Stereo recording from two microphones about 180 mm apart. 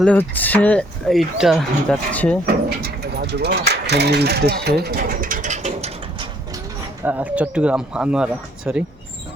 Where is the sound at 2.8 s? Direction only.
60° right (ahead or behind); by 6.5 s 25° right (ahead or behind).